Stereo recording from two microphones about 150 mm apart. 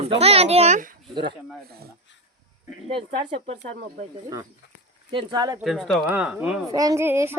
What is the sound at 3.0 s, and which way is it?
Speech, 40° right (ahead or behind).